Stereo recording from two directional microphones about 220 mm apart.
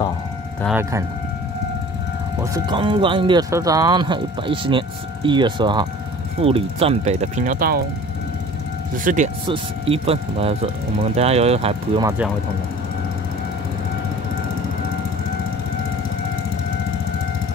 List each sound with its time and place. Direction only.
2.4 s speech: 15° right (ahead or behind); by 7.8 s 40° right (ahead or behind)
8.9 s speech: 35° right (ahead or behind)
9.5 s speech: 25° right (ahead or behind)